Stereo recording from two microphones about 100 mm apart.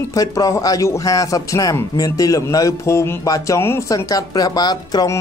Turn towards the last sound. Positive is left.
turn(degrees=35)  # may be behind; listen again after turning